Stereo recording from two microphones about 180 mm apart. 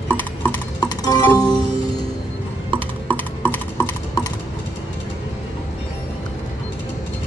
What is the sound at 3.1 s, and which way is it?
Typing, 10° left (ahead or behind).